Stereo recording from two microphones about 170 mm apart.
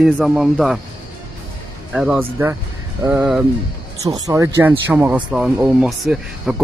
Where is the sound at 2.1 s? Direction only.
15° right (ahead or behind).